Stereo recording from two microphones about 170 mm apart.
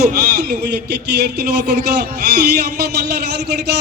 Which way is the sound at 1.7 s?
75° right (ahead or behind).